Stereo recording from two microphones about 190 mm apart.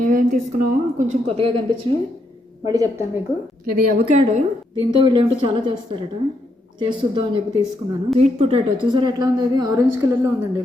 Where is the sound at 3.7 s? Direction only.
45° right (ahead or behind).